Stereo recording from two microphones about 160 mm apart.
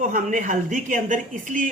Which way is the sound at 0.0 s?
55° right (ahead or behind).